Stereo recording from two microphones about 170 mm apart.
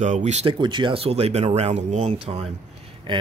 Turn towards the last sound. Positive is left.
turn(degrees=-30)  # may be behind; listen again after turning